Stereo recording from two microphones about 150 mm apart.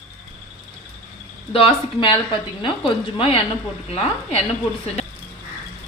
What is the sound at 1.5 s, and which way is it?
Speech, 35° left (ahead or behind).